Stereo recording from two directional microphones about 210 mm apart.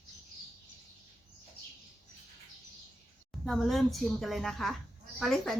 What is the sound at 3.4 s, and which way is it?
Speech, centre (ahead or behind).